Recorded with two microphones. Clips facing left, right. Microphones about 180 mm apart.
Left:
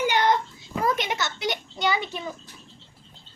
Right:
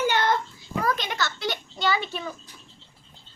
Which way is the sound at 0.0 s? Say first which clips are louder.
Left 1 dB; 15° left (ahead or behind).